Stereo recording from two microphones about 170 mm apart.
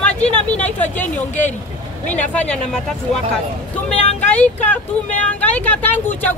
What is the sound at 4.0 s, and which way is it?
Vehicle, 35° left (ahead or behind).